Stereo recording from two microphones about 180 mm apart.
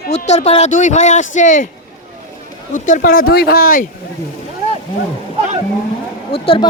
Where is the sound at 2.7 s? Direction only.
45° left (ahead or behind).